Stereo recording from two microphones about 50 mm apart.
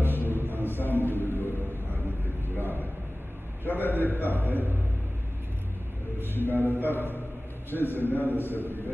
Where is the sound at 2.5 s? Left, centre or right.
Left.